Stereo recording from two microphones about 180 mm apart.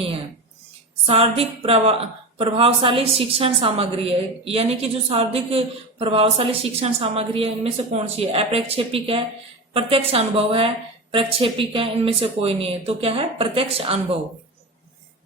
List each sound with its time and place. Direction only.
1.0 s a woman's voice: 35° right (ahead or behind)